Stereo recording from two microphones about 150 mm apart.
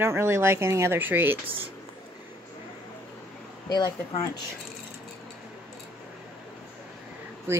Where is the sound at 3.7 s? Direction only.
25° left (ahead or behind).